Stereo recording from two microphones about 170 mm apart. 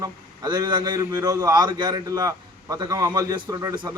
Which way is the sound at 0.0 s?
25° right (ahead or behind).